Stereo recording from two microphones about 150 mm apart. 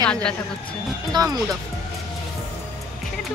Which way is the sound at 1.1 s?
25° right (ahead or behind).